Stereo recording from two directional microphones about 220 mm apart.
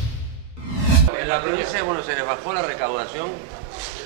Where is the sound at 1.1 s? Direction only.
20° right (ahead or behind).